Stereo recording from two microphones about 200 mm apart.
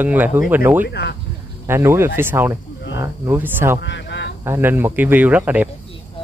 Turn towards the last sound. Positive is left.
turn(degrees=-10)  # may be behind; listen again after turning